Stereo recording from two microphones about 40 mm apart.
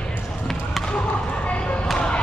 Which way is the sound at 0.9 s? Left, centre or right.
Left.